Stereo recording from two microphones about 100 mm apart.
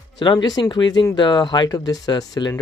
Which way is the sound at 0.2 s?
50° left (ahead or behind).